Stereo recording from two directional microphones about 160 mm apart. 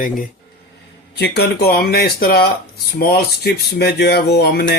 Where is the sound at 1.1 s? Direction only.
90° left.